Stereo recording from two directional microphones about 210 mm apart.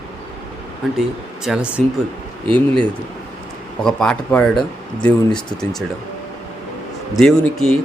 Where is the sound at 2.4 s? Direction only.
25° right (ahead or behind).